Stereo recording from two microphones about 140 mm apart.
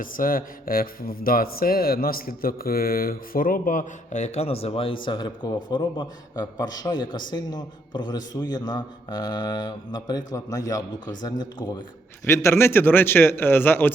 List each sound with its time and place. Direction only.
0.0 s a man's voice: 85° left; by 11.7 s 30° left (ahead or behind)
12.2 s a man's voice: 20° left (ahead or behind)